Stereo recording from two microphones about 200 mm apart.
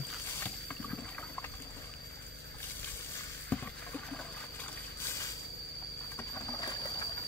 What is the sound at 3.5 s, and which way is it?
Rowboat, 5° left (ahead or behind).